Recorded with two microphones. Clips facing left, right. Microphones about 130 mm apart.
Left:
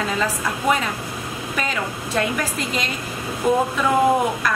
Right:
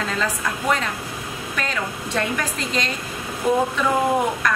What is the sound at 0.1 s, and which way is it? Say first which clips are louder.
A woman's voice: left 2 dB; 10° left (ahead or behind).